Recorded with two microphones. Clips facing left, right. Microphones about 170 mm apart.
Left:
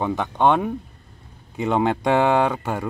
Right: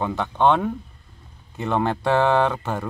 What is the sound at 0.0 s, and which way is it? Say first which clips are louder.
Speech: even; 15° left (ahead or behind).